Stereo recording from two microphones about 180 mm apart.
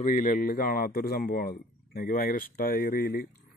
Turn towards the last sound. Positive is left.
turn(degrees=55)  # may be behind; listen again after turning